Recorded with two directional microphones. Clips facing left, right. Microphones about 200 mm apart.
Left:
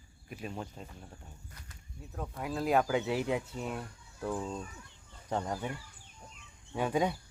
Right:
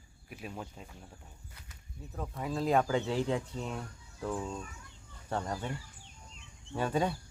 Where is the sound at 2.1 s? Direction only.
Centre (ahead or behind).